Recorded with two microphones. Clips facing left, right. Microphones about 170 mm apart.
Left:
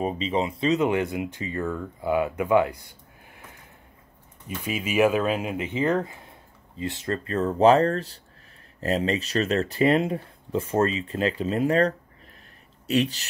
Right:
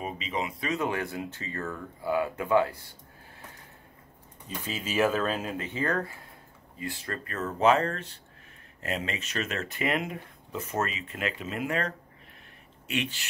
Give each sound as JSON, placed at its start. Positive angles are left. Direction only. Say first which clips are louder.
{"t": 0.0, "sound": "speech", "louder": "left 7 dB", "side_deg": 30}
{"t": 4.6, "sound": "speech", "louder": "left 5 dB", "side_deg": 15}